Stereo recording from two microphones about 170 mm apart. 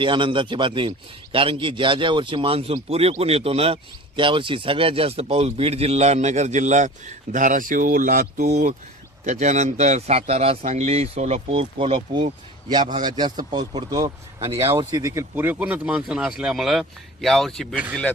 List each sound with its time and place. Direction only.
0.0 s a man's voice: 30° right (ahead or behind); by 8.4 s 55° right (ahead or behind)
8.4 s a man's voice: 40° right (ahead or behind); by 17.7 s centre (ahead or behind)